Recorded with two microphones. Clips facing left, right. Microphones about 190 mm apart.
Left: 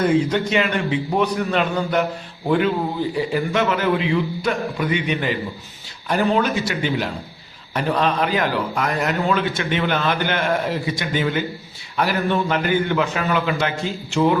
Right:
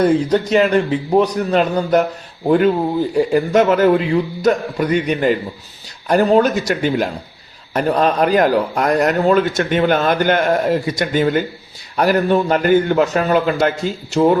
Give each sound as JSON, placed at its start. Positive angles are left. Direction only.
{"t": 0.0, "sound": "a man's voice", "side_deg": -35}
{"t": 3.2, "sound": "a man's voice", "side_deg": -45}